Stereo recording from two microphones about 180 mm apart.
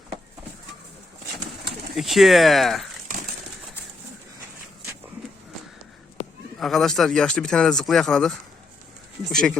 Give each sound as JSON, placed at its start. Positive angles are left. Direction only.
{"t": 2.0, "sound": "speech", "side_deg": 0}
{"t": 6.2, "sound": "a sound", "side_deg": 30}
{"t": 6.6, "sound": "speech", "side_deg": 0}